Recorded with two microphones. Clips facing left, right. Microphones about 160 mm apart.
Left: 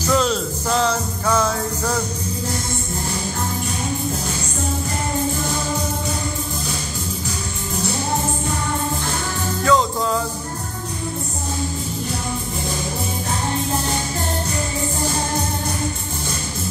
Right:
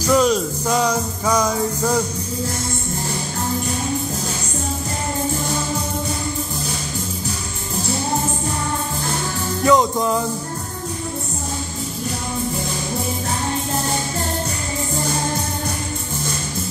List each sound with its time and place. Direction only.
0.0 s music: 10° right (ahead or behind)
9.7 s music: 20° right (ahead or behind)